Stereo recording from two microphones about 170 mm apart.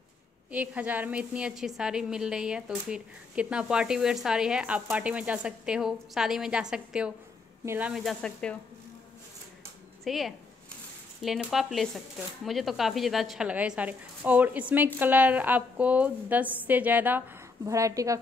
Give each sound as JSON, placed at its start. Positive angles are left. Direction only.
{"t": 0.5, "sound": "a woman's voice", "side_deg": -10}
{"t": 7.9, "sound": "speech", "side_deg": 0}
{"t": 10.0, "sound": "a woman's voice", "side_deg": 0}